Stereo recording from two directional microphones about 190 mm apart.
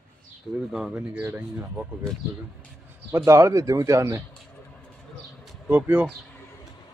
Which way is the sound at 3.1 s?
15° right (ahead or behind).